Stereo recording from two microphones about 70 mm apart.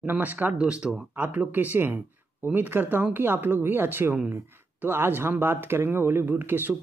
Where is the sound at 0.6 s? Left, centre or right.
Centre.